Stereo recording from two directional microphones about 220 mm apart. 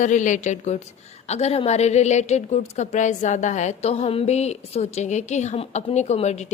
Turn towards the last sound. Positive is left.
turn(degrees=30)  # may be behind; listen again after turning